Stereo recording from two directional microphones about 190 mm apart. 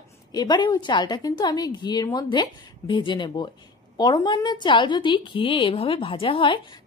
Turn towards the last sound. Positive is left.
turn(degrees=25)  # may be behind; listen again after turning